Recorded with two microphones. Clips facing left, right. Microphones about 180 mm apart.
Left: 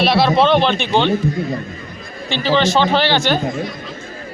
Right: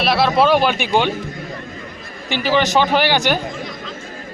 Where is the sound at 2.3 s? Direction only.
15° right (ahead or behind).